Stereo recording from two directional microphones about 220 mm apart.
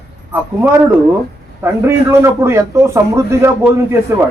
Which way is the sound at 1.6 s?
10° right (ahead or behind).